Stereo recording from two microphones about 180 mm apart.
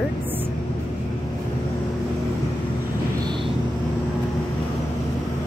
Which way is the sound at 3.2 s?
25° right (ahead or behind).